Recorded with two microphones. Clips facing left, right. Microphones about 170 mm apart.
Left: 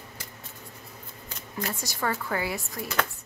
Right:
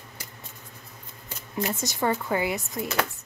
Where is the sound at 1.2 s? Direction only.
20° right (ahead or behind).